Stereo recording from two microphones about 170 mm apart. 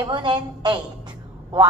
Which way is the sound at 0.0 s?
25° right (ahead or behind).